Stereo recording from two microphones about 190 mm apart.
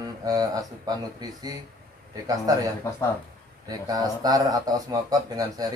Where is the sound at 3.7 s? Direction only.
20° right (ahead or behind).